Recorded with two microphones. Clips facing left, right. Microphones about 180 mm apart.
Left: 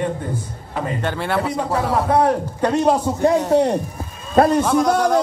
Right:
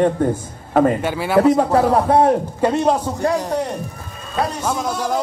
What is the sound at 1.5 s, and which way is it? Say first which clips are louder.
Speech: right 5 dB; 40° right (ahead or behind).